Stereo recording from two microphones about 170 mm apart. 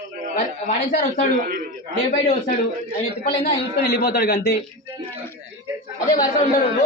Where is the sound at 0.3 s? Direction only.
45° left (ahead or behind).